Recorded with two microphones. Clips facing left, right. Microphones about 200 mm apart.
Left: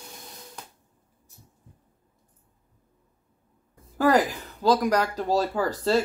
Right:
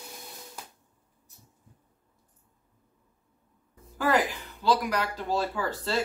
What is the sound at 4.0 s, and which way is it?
Speech, 40° left (ahead or behind).